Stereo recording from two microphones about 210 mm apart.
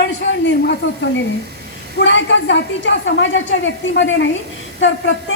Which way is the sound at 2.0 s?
60° left (ahead or behind).